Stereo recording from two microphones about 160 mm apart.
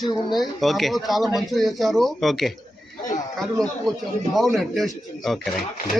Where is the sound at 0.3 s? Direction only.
Centre (ahead or behind).